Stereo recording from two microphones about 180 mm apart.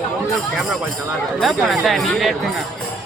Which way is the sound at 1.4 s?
Centre (ahead or behind).